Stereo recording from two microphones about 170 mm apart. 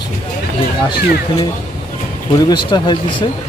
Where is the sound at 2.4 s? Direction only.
25° left (ahead or behind).